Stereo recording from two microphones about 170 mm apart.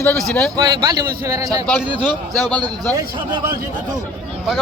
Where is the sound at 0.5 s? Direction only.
25° right (ahead or behind).